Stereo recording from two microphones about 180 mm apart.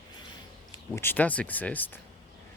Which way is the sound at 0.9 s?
10° left (ahead or behind).